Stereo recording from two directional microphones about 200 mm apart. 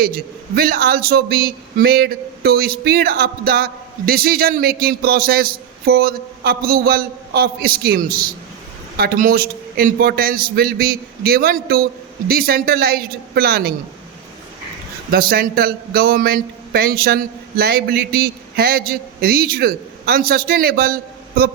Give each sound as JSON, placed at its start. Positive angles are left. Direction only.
{"t": 0.0, "sound": "a man's voice", "side_deg": -50}
{"t": 15.1, "sound": "a man's voice", "side_deg": -50}